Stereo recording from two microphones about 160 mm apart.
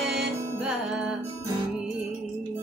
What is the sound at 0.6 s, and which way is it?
Music, 5° right (ahead or behind).